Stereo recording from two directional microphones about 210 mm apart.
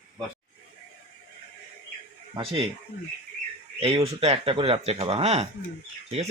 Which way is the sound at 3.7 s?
25° right (ahead or behind).